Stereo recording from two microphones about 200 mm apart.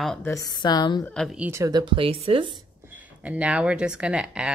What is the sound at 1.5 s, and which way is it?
Speech, 15° right (ahead or behind).